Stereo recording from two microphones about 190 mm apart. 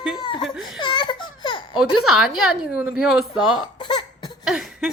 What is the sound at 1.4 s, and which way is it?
Baby laughter, 25° left (ahead or behind).